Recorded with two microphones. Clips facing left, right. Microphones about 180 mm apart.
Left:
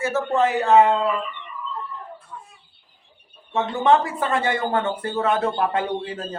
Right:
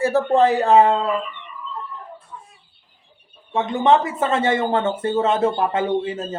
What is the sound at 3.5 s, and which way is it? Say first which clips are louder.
Speech: right 2 dB; 20° right (ahead or behind).